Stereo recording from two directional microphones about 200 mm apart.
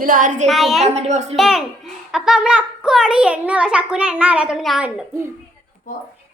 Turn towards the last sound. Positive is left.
turn(degrees=0)  # may be behind; listen again after turning